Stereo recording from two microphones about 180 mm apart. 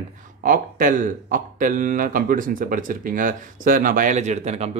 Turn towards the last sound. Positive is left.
turn(degrees=-40)  # may be behind; listen again after turning